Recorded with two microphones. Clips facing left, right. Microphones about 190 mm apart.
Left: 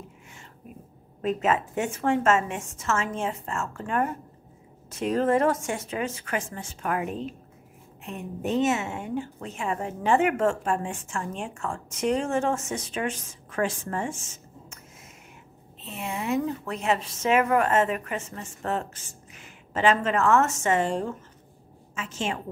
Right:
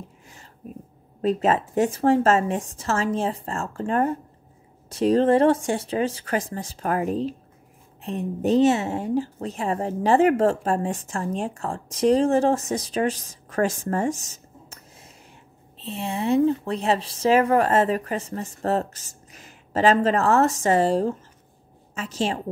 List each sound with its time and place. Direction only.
1.2 s a woman's voice: 35° right (ahead or behind)
15.8 s a woman's voice: 30° right (ahead or behind)